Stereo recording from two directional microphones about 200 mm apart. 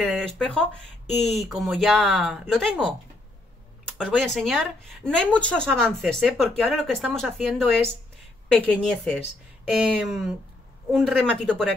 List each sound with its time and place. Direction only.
0.0 s speech: centre (ahead or behind)
8.8 s speech: 5° left (ahead or behind)